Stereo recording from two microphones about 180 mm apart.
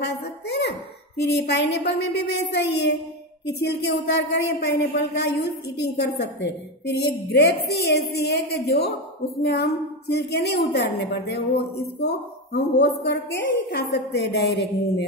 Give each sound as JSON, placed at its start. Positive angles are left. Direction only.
{"t": 0.0, "sound": "a woman's voice", "side_deg": 70}